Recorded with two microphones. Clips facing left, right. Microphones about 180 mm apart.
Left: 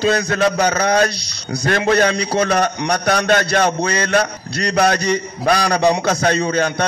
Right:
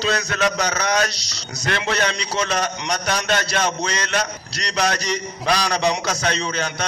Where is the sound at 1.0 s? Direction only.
55° left (ahead or behind).